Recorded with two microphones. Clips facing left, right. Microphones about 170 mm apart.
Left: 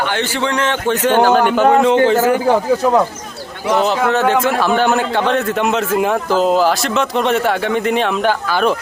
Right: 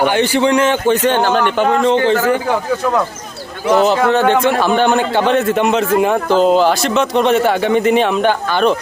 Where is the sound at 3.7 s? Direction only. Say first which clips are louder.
Right 3 dB; centre (ahead or behind).